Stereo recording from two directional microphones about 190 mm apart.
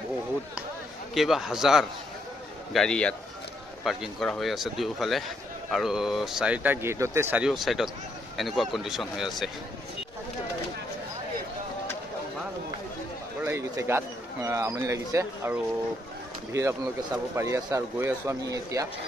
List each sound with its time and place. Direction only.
1.1 s speech: centre (ahead or behind)
13.4 s a man's voice: 15° right (ahead or behind)